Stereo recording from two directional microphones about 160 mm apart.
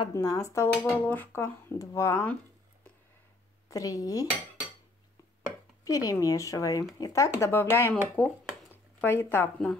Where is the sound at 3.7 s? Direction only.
20° left (ahead or behind).